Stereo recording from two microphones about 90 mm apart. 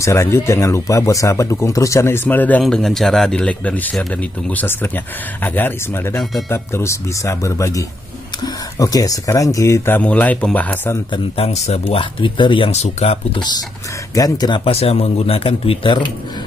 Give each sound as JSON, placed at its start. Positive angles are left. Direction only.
{"t": 0.0, "sound": "speech", "side_deg": 30}
{"t": 2.2, "sound": "speech", "side_deg": 20}
{"t": 2.6, "sound": "speech", "side_deg": 5}
{"t": 9.8, "sound": "speech", "side_deg": 20}
{"t": 11.3, "sound": "speech", "side_deg": 90}
{"t": 14.1, "sound": "speech", "side_deg": 45}
{"t": 14.6, "sound": "speech", "side_deg": 90}